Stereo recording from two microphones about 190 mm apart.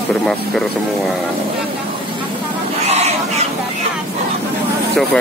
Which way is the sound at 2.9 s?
35° right (ahead or behind).